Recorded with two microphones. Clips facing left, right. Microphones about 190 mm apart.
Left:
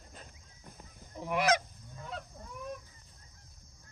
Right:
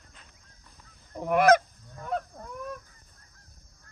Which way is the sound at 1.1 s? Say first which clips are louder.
Right 9 dB; 55° right (ahead or behind).